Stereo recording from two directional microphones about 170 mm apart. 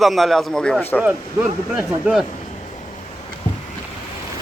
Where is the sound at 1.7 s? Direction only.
Centre (ahead or behind).